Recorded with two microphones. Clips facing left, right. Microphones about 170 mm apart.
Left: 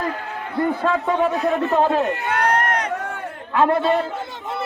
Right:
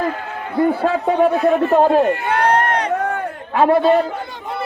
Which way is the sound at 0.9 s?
40° right (ahead or behind).